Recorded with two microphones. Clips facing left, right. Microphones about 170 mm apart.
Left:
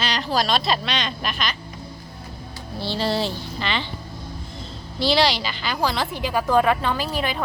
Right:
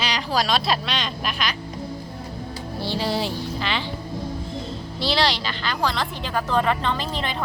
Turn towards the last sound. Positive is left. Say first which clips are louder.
# left 2 dB
turn(degrees=10)  # may be behind; listen again after turning